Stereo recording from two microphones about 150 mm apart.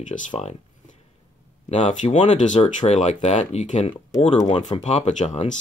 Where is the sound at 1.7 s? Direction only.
50° left (ahead or behind).